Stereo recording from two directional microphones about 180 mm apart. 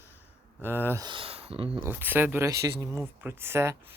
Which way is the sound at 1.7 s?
10° right (ahead or behind).